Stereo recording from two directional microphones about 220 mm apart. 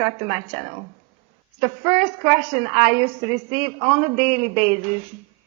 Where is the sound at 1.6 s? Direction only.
15° right (ahead or behind).